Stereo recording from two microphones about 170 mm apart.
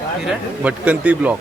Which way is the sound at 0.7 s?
10° right (ahead or behind).